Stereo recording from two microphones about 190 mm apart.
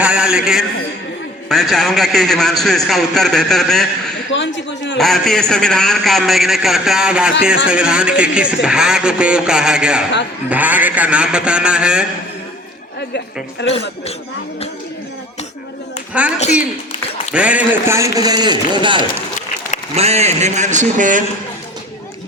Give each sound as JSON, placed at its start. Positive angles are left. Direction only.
{"t": 0.0, "sound": "a man's voice", "side_deg": -5}
{"t": 4.3, "sound": "a sound", "side_deg": 70}
{"t": 4.9, "sound": "speech", "side_deg": 0}
{"t": 13.0, "sound": "a woman's voice", "side_deg": 65}
{"t": 17.3, "sound": "a man's voice", "side_deg": -5}